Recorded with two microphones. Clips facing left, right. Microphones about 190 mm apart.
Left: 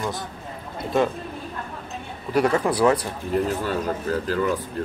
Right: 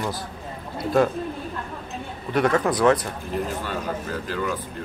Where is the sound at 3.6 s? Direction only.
45° left (ahead or behind).